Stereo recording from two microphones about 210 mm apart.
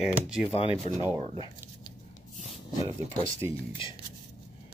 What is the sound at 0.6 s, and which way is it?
Speech, 25° left (ahead or behind).